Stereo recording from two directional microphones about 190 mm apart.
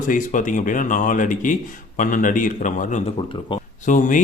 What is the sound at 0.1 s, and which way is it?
A man's voice, 45° left (ahead or behind).